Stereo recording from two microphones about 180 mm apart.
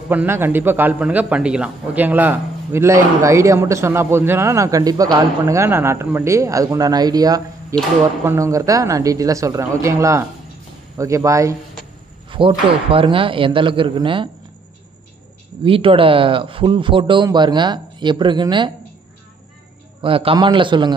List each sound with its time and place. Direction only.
0.1 s a man's voice: 10° right (ahead or behind)
12.3 s speech: 30° right (ahead or behind)
15.6 s speech: 30° right (ahead or behind)
20.0 s speech: 30° right (ahead or behind)